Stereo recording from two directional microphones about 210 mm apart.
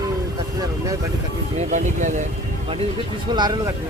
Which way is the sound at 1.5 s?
35° right (ahead or behind).